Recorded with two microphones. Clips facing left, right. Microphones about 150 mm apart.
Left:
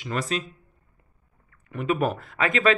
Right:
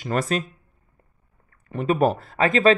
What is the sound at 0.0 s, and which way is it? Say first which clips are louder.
Speech: right 4 dB; 45° right (ahead or behind).